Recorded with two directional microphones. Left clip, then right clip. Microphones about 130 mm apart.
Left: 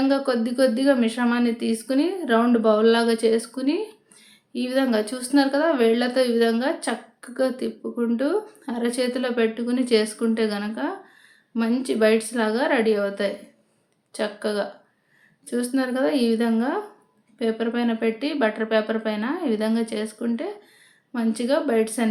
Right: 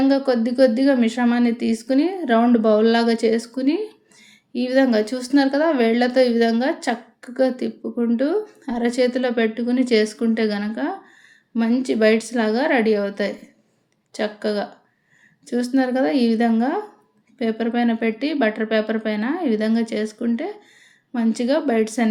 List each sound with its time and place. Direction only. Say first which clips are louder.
0.0 s speech: right 3 dB; 20° right (ahead or behind)